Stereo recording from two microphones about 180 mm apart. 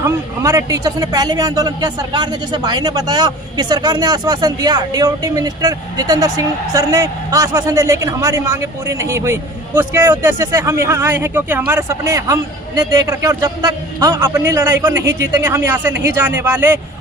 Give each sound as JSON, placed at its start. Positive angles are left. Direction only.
{"t": 0.4, "sound": "a man's voice", "side_deg": -20}